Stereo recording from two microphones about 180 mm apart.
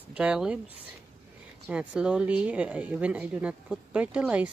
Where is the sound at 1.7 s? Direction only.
5° right (ahead or behind).